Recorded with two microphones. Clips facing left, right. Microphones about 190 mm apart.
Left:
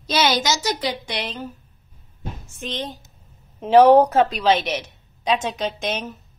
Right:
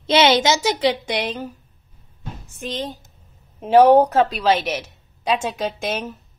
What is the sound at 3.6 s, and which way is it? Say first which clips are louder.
A woman's voice: even; 5° right (ahead or behind).